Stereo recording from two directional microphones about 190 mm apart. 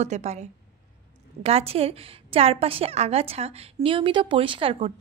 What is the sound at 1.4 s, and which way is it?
A woman's voice, 30° right (ahead or behind).